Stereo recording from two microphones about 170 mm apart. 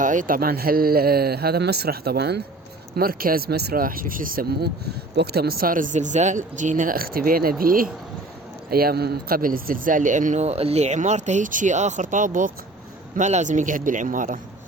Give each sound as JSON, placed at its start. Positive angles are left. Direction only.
{"t": 0.0, "sound": "speech", "side_deg": -50}
{"t": 2.9, "sound": "speech", "side_deg": -60}